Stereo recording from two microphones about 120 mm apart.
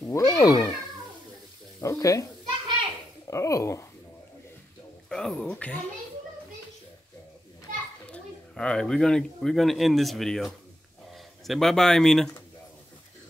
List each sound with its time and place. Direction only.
0.0 s speech: 25° left (ahead or behind)
1.8 s sizzle: 25° left (ahead or behind)
3.3 s a sound: 25° left (ahead or behind)
5.1 s speech: 5° left (ahead or behind)
8.1 s speech: 5° left (ahead or behind)